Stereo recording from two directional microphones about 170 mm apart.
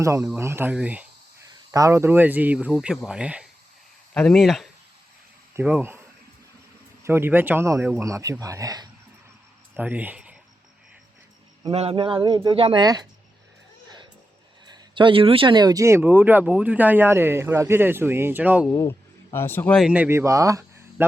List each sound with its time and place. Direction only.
0.0 s speech: 15° right (ahead or behind)
1.7 s speech: 20° right (ahead or behind); by 4.7 s centre (ahead or behind)
5.5 s speech: 10° right (ahead or behind)
7.0 s speech: 15° right (ahead or behind)
9.7 s speech: 10° right (ahead or behind)
11.7 s speech: 35° right (ahead or behind)
14.7 s speech: 30° right (ahead or behind); by 18.7 s 10° right (ahead or behind)
18.7 s speech: 15° left (ahead or behind)
19.7 s speech: 5° right (ahead or behind)